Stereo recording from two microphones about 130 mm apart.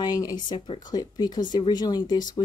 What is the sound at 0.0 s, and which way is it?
Speech, 30° left (ahead or behind).